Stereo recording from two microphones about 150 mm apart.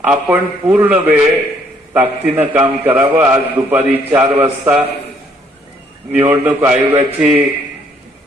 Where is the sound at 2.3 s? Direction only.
10° right (ahead or behind).